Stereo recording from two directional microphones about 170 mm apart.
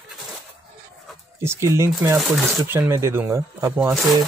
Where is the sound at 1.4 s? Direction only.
15° right (ahead or behind).